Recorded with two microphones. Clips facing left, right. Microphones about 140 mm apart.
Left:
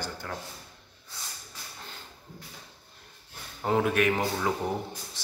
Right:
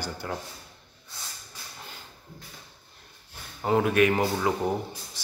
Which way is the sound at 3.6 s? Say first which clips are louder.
Right 3 dB; centre (ahead or behind).